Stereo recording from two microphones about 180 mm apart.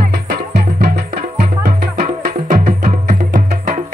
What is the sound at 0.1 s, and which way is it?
Music, 65° right (ahead or behind).